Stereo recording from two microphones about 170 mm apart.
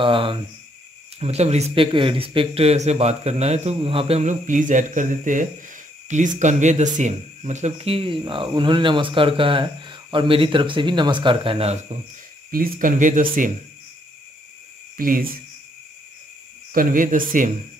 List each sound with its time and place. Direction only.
0.0 s speech: 30° right (ahead or behind)
12.4 s speech: 60° right (ahead or behind)
15.0 s cricket: 55° right (ahead or behind)
16.7 s speech: 50° right (ahead or behind)